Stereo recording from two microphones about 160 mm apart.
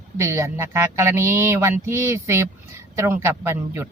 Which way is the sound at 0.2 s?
15° right (ahead or behind).